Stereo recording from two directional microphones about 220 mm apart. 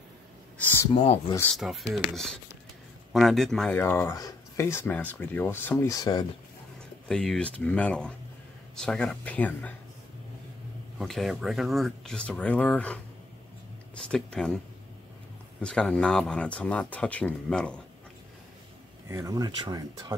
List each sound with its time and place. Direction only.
0.6 s a sound: 10° left (ahead or behind)
0.9 s speech: 30° left (ahead or behind)
1.3 s speech: 5° left (ahead or behind)
3.1 s speech: centre (ahead or behind); by 6.2 s 15° left (ahead or behind)
7.1 s speech: 5° left (ahead or behind)
11.0 s speech: centre (ahead or behind)
15.6 s speech: 5° left (ahead or behind)
19.0 s speech: 15° right (ahead or behind)